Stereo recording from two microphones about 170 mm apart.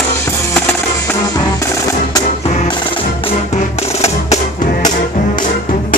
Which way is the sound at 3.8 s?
40° left (ahead or behind).